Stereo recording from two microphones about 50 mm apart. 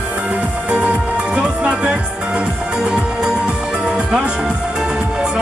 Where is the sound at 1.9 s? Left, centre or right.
Centre.